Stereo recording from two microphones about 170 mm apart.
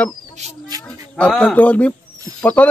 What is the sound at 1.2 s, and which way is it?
A man's voice, 5° left (ahead or behind).